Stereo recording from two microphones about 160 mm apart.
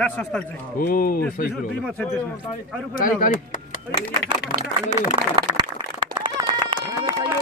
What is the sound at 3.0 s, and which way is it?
Speech, 60° left (ahead or behind).